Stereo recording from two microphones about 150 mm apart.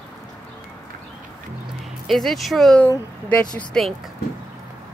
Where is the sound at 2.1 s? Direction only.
Centre (ahead or behind).